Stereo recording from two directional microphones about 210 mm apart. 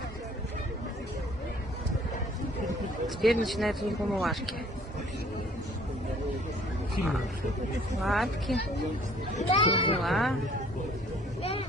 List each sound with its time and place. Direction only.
3.2 s speech: centre (ahead or behind)
8.0 s speech: centre (ahead or behind)
9.4 s speech: 25° left (ahead or behind)
10.0 s speech: centre (ahead or behind)